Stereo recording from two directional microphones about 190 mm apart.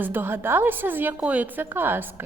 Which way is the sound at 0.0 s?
10° right (ahead or behind).